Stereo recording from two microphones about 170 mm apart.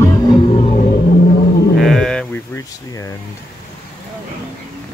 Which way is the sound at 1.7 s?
Centre (ahead or behind).